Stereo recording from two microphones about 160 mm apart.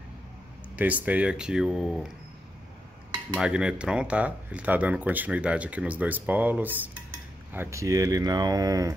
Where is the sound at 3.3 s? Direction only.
5° right (ahead or behind); by 8.9 s 20° right (ahead or behind).